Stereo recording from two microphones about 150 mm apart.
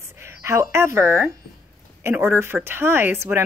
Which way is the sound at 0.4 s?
20° right (ahead or behind).